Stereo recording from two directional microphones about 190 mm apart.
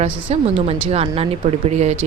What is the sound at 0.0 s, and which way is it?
A woman's voice, 30° right (ahead or behind).